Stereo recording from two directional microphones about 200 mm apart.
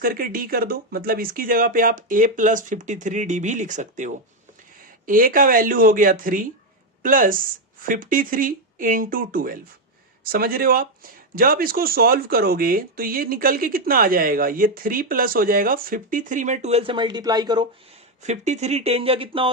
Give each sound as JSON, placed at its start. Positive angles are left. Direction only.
{"t": 0.0, "sound": "speech", "side_deg": -45}
{"t": 18.2, "sound": "speech", "side_deg": -35}